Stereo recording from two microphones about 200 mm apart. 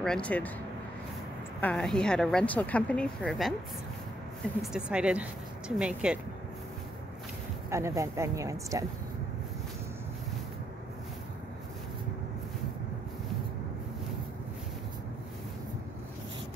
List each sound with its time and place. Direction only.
0.0 s speech: 5° left (ahead or behind)
1.6 s a woman's voice: 5° left (ahead or behind)
4.6 s a woman's voice: 5° right (ahead or behind)
7.7 s speech: 15° right (ahead or behind)